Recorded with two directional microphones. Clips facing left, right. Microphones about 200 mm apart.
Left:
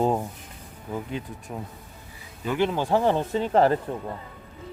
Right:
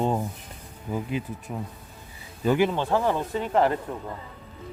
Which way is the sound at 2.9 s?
25° left (ahead or behind).